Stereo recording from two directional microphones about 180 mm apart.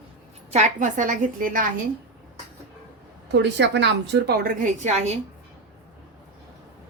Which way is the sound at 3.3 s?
75° right (ahead or behind).